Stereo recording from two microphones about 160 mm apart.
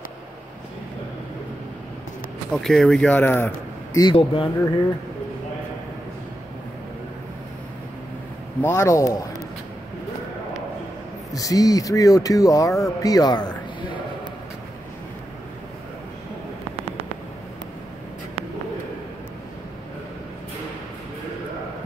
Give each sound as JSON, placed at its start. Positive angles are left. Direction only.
{"t": 2.5, "sound": "speech", "side_deg": 0}
{"t": 4.0, "sound": "speech", "side_deg": 30}
{"t": 8.6, "sound": "speech", "side_deg": 15}
{"t": 11.3, "sound": "speech", "side_deg": 20}